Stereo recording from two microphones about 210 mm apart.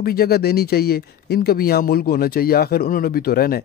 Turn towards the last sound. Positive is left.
turn(degrees=45)  # may be behind; listen again after turning